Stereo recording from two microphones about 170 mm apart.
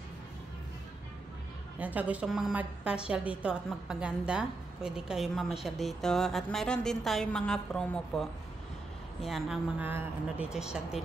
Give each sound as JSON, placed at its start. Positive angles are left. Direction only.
{"t": 1.8, "sound": "a woman's voice", "side_deg": -10}